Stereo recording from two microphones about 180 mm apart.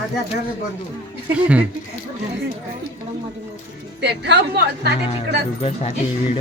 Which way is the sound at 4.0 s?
75° right (ahead or behind).